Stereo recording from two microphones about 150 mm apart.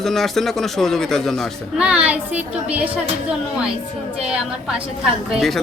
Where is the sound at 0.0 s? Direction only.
Centre (ahead or behind).